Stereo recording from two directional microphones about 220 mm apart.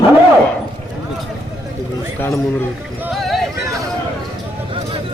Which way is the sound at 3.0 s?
Centre (ahead or behind).